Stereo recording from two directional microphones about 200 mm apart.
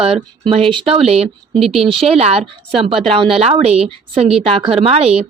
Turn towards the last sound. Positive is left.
turn(degrees=-30)  # may be behind; listen again after turning